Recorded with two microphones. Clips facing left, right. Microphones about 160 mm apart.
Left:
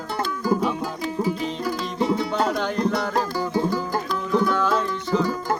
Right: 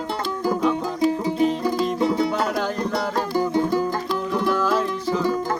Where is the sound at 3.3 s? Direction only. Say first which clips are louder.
Right 3 dB; 20° right (ahead or behind).